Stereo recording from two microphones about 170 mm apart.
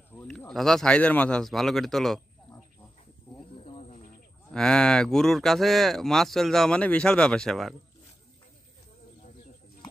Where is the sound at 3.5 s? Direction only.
35° left (ahead or behind).